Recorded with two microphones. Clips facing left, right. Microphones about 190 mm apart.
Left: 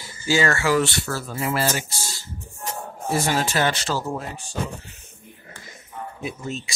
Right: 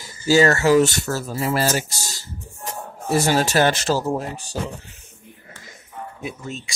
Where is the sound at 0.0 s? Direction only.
40° right (ahead or behind).